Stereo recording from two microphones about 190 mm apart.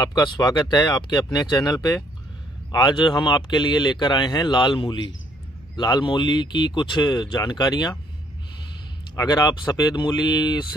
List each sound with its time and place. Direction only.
0.0 s speech: 20° left (ahead or behind)
9.1 s speech: 20° left (ahead or behind)